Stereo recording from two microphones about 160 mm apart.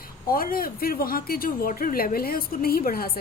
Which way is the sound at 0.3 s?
65° left (ahead or behind).